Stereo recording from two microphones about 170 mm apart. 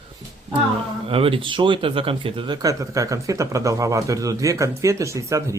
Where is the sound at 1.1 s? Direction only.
35° right (ahead or behind).